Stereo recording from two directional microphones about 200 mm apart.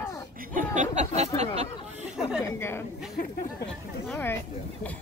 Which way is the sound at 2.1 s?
5° right (ahead or behind).